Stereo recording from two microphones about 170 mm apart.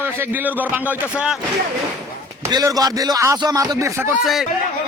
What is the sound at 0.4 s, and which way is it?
Speech, 10° right (ahead or behind).